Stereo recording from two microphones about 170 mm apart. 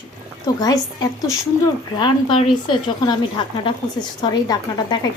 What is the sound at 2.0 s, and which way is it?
A woman's voice, 25° left (ahead or behind).